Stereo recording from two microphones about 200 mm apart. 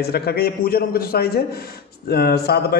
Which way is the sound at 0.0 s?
50° left (ahead or behind).